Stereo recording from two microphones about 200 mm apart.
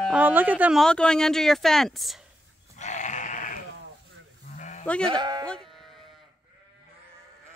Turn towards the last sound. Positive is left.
turn(degrees=0)  # may be behind; listen again after turning